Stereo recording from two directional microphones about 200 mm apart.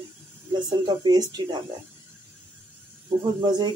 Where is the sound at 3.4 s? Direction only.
20° right (ahead or behind).